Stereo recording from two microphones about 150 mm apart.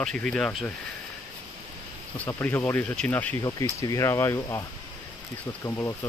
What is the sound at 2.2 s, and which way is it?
Speech, 15° left (ahead or behind).